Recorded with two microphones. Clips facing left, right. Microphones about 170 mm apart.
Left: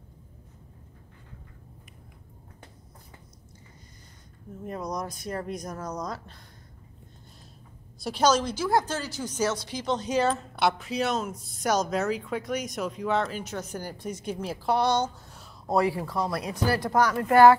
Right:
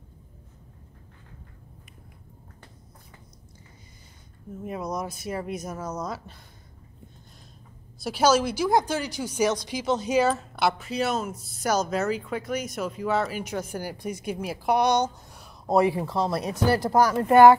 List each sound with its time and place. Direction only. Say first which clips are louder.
4.6 s speech: right 2 dB; 5° right (ahead or behind)
8.0 s speech: right 2 dB; 5° right (ahead or behind)